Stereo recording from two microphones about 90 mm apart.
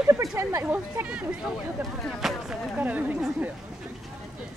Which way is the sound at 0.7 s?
15° right (ahead or behind).